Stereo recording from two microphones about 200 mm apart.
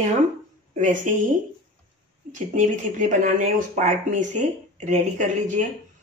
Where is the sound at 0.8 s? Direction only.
40° right (ahead or behind).